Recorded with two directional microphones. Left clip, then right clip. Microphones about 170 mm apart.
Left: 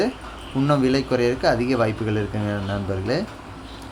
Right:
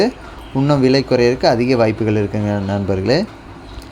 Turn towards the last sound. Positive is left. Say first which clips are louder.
# right 8 dB
turn(degrees=-30)  # may be behind; listen again after turning